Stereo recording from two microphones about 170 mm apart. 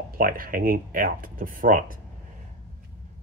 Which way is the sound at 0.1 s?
55° right (ahead or behind).